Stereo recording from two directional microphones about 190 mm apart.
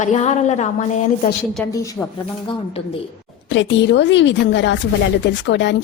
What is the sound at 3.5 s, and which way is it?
Speech, 70° left (ahead or behind).